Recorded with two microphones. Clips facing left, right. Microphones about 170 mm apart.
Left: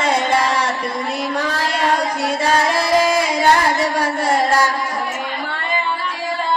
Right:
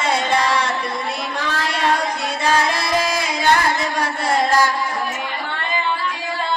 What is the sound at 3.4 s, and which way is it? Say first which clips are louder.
Singing: even; 40° left (ahead or behind).